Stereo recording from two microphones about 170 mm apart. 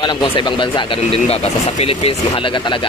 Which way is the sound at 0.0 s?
25° left (ahead or behind).